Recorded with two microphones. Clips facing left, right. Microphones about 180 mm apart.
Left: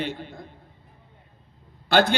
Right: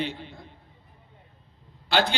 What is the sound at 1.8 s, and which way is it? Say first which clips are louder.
Speech: left 5 dB; 50° left (ahead or behind).